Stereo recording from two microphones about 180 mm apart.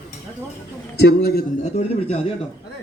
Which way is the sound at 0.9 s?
65° left (ahead or behind).